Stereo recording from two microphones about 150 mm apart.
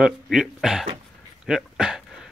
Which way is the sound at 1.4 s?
5° right (ahead or behind).